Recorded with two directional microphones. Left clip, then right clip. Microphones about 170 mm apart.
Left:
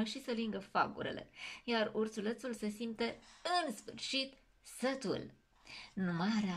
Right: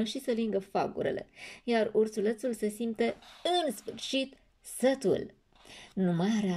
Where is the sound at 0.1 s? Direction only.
35° right (ahead or behind).